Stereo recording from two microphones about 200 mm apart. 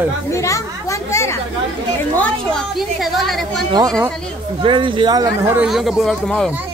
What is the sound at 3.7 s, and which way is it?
A man's voice, 20° right (ahead or behind).